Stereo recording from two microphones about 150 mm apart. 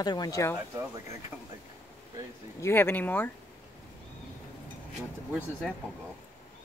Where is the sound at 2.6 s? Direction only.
15° left (ahead or behind).